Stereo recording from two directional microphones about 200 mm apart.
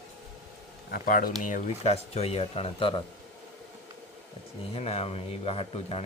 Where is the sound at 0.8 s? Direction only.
45° left (ahead or behind); by 3.0 s 25° left (ahead or behind).